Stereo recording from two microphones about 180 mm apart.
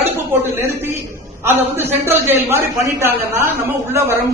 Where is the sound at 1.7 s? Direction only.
15° right (ahead or behind).